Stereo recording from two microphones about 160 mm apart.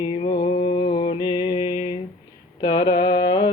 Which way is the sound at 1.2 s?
30° left (ahead or behind).